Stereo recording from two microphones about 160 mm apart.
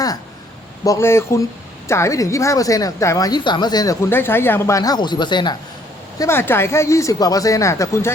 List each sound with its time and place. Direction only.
0.9 s a woman's voice: 15° left (ahead or behind)
6.1 s a woman's voice: 15° left (ahead or behind)